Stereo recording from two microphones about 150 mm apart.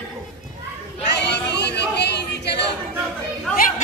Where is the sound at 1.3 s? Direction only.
90° left.